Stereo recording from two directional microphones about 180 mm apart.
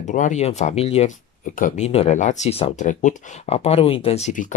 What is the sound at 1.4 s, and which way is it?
Speech, 45° left (ahead or behind).